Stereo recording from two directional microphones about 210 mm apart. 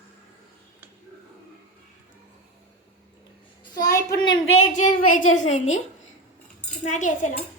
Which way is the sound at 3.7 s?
20° left (ahead or behind).